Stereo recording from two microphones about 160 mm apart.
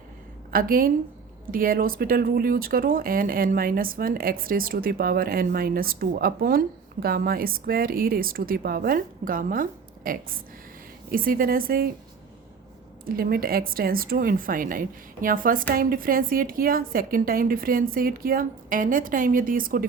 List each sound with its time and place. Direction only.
0.5 s speech: 65° right (ahead or behind)
13.1 s speech: 65° right (ahead or behind)